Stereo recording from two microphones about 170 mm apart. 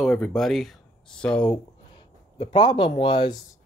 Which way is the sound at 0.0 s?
5° left (ahead or behind).